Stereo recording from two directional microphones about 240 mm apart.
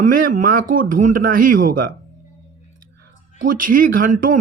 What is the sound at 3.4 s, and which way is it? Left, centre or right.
Speech, right.